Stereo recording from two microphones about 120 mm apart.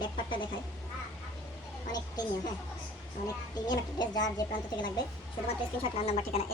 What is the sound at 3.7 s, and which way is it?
Speech, 35° left (ahead or behind).